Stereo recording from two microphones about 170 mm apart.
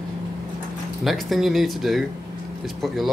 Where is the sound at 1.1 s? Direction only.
Centre (ahead or behind).